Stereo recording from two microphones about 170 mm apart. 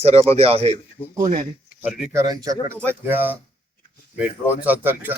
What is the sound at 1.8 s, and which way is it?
Speech, 5° right (ahead or behind).